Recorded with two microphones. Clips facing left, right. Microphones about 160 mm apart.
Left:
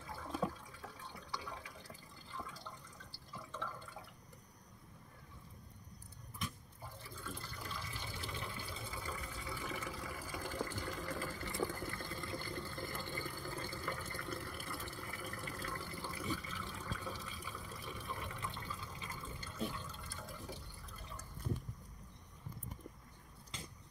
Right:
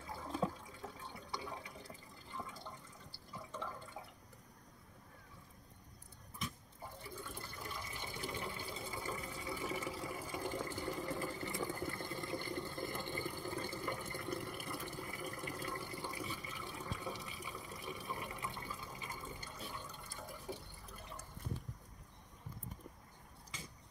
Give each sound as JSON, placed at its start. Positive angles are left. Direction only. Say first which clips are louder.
{"t": 0.1, "sound": "water", "louder": "right 1 dB", "side_deg": -20}
{"t": 2.3, "sound": "water", "louder": "right 1 dB", "side_deg": -20}
{"t": 3.3, "sound": "drip", "louder": "right 1 dB", "side_deg": -15}
{"t": 7.5, "sound": "water", "louder": "even", "side_deg": -20}
{"t": 19.7, "sound": "fill", "louder": "left 1 dB", "side_deg": -15}